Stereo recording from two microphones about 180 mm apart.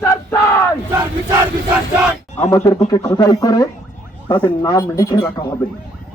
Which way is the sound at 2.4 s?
15° left (ahead or behind).